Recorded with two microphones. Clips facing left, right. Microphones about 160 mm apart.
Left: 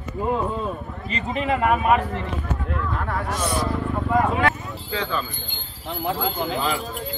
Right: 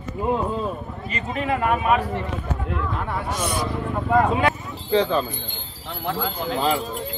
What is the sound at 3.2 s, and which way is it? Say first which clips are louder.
Speech: left 2 dB; 20° right (ahead or behind).